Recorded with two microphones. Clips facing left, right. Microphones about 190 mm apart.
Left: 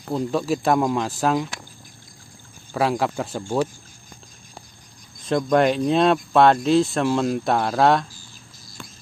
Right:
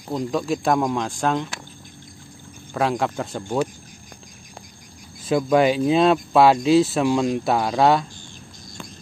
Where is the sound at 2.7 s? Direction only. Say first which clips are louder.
Even; centre (ahead or behind).